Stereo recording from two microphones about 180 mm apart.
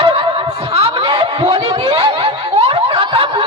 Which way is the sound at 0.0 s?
30° right (ahead or behind).